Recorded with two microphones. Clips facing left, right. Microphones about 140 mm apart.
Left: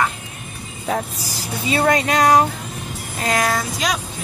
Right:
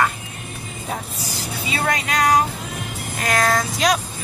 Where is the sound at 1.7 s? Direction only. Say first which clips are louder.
Left 6 dB; 40° left (ahead or behind).